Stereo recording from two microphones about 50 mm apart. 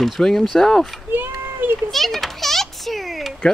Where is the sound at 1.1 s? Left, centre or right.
Right.